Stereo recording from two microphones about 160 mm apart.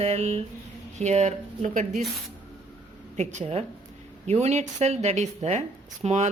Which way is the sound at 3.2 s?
40° right (ahead or behind).